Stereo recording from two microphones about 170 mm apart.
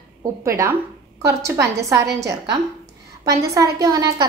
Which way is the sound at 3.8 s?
25° right (ahead or behind).